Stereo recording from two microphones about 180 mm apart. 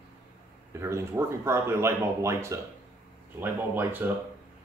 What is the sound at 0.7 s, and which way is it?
Speech, 15° right (ahead or behind).